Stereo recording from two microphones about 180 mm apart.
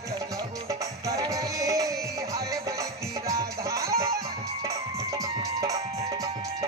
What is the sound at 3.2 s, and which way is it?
Music, 15° right (ahead or behind).